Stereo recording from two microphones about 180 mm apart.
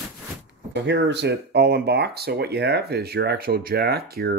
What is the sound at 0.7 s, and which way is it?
Speech, 75° right (ahead or behind).